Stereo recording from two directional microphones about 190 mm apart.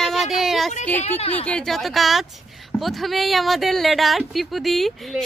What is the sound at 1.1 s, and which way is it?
Speech, 35° left (ahead or behind).